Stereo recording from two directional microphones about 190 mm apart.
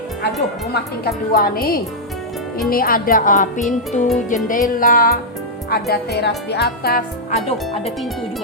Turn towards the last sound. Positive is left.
turn(degrees=35)  # may be behind; listen again after turning